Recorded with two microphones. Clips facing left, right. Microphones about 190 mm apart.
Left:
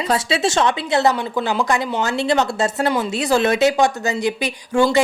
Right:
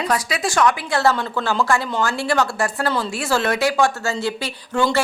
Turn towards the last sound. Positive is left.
turn(degrees=15)  # may be behind; listen again after turning